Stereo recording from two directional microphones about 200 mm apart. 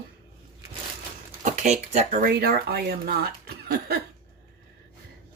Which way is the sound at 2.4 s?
50° right (ahead or behind).